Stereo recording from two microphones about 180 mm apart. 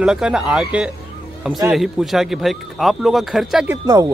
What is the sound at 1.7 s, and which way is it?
Speech, centre (ahead or behind).